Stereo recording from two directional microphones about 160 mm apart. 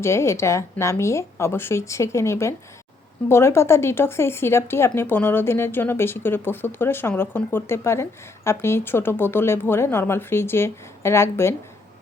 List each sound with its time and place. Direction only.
0.0 s speech: 15° left (ahead or behind)